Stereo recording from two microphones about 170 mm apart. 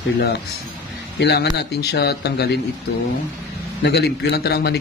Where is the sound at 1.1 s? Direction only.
85° left.